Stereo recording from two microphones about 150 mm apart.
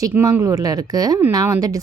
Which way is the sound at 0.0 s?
20° right (ahead or behind).